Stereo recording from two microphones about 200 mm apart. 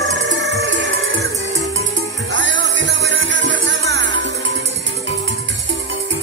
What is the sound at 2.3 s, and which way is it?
Music, 65° right (ahead or behind).